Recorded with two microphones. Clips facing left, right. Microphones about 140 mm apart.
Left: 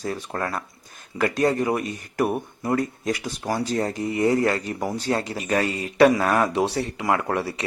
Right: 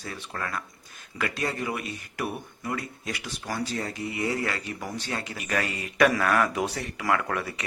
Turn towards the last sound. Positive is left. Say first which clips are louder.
# left 5 dB
turn(degrees=30)  # may be behind; listen again after turning